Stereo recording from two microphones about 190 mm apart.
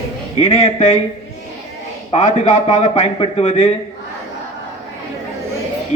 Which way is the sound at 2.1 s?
35° left (ahead or behind).